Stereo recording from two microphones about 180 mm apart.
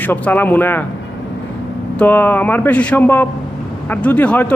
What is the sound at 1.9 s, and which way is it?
A man's voice, 10° left (ahead or behind).